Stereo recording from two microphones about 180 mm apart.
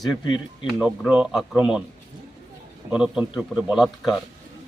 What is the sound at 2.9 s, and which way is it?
A man's voice, 5° right (ahead or behind).